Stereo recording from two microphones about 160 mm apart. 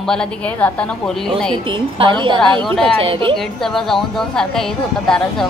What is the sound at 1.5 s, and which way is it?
A woman's voice, 30° right (ahead or behind).